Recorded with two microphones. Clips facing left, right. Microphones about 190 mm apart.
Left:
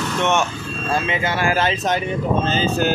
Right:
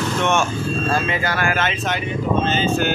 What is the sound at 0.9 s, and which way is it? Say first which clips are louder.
Speech: even; 20° left (ahead or behind).